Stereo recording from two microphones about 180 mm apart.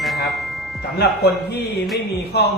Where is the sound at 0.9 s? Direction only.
65° left (ahead or behind).